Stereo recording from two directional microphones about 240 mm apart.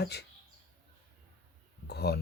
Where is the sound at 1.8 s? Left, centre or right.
Left.